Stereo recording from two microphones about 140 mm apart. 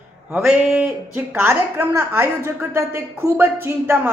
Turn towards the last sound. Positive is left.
turn(degrees=-15)  # may be behind; listen again after turning